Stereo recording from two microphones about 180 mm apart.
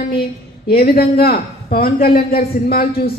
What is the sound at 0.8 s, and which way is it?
A man's voice, 60° left (ahead or behind).